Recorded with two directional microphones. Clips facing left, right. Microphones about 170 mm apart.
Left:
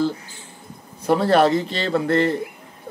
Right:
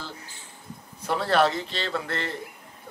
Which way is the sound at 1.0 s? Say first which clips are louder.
Left 6 dB; 45° left (ahead or behind).